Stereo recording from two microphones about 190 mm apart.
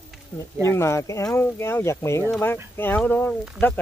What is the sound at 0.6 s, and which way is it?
Speech, 15° left (ahead or behind).